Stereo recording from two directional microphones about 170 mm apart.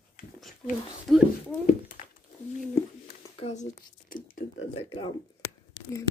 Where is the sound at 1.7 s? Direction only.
50° left (ahead or behind).